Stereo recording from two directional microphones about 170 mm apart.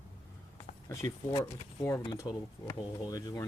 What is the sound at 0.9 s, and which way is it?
Speech, 20° left (ahead or behind).